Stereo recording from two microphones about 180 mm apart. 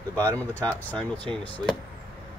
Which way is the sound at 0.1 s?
10° left (ahead or behind).